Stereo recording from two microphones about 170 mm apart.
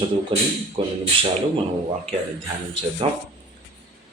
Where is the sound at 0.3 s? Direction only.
30° right (ahead or behind).